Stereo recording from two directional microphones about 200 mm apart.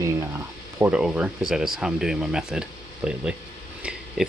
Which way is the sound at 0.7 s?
5° right (ahead or behind).